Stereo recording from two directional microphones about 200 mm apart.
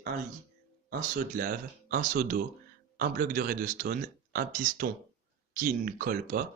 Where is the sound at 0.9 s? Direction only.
45° right (ahead or behind).